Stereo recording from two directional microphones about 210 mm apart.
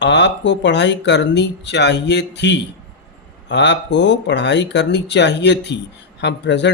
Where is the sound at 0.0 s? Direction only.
55° left (ahead or behind).